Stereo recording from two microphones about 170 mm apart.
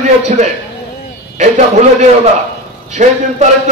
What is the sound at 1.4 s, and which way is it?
Music, 45° right (ahead or behind).